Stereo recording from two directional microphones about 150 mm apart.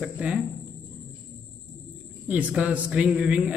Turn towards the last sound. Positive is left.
turn(degrees=-5)  # may be behind; listen again after turning